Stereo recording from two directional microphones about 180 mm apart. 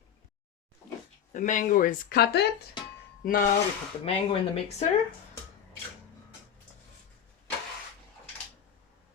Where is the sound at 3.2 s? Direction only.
50° left (ahead or behind).